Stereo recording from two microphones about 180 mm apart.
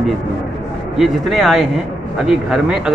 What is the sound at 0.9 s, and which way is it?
A man's voice, centre (ahead or behind).